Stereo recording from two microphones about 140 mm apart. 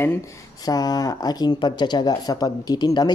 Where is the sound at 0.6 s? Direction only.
25° left (ahead or behind).